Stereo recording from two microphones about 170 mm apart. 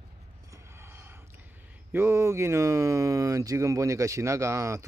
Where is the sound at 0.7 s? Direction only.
15° right (ahead or behind).